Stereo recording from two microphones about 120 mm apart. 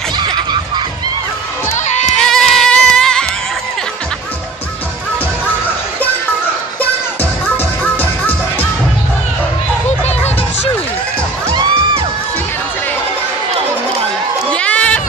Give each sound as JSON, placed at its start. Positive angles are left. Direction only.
{"t": 2.1, "sound": "music", "side_deg": 5}
{"t": 7.8, "sound": "music", "side_deg": 15}
{"t": 10.0, "sound": "music", "side_deg": 65}
{"t": 11.5, "sound": "music", "side_deg": -40}
{"t": 14.5, "sound": "a sound", "side_deg": 10}